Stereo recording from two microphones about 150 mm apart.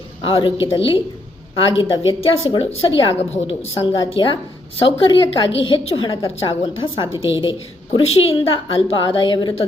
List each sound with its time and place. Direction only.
0.2 s a woman's voice: 40° left (ahead or behind)
4.1 s a woman's voice: 35° left (ahead or behind)